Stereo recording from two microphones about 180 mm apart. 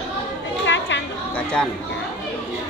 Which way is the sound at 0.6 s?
90° left.